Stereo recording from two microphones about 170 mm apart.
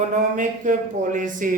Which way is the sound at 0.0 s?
50° right (ahead or behind).